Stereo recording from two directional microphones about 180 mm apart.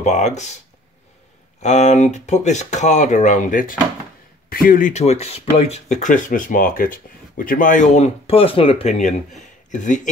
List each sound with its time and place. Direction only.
0.0 s speech: 40° left (ahead or behind)
1.6 s speech: 40° left (ahead or behind)